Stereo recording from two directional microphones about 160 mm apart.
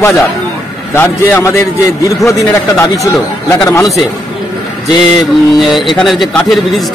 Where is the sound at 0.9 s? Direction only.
15° left (ahead or behind).